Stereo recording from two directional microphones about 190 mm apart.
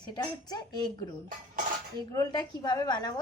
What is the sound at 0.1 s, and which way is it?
Speech, 20° left (ahead or behind).